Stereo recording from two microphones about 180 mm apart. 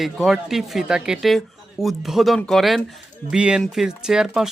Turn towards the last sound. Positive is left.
turn(degrees=0)  # may be behind; listen again after turning